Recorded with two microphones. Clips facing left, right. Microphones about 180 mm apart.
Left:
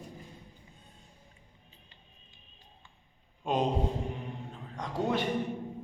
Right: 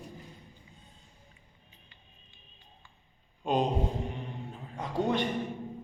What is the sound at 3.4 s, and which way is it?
Speech, centre (ahead or behind).